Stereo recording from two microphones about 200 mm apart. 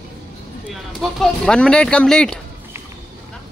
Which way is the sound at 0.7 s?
Centre (ahead or behind).